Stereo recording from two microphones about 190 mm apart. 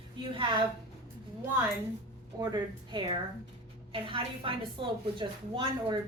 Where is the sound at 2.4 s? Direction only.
20° right (ahead or behind).